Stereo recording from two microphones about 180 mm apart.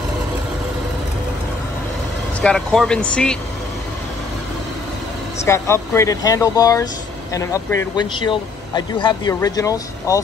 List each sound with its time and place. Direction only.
2.4 s speech: centre (ahead or behind)
5.4 s speech: 15° left (ahead or behind)
7.9 s speech: 25° left (ahead or behind)